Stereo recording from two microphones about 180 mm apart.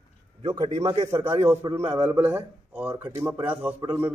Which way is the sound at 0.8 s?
20° right (ahead or behind).